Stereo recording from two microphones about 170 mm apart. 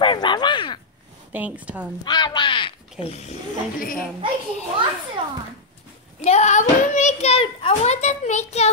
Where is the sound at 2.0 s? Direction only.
25° left (ahead or behind).